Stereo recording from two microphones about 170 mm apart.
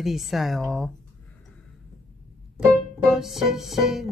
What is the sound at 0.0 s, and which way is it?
Music, centre (ahead or behind).